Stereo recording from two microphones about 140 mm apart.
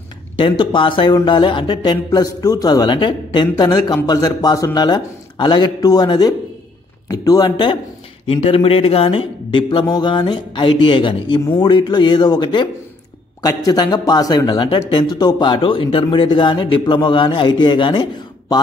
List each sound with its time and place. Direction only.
0.4 s speech: 35° left (ahead or behind)
8.3 s speech: 45° left (ahead or behind)
13.7 s speech: 30° left (ahead or behind)